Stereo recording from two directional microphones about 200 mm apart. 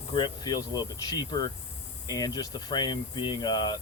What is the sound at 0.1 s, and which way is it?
Speech, 20° left (ahead or behind).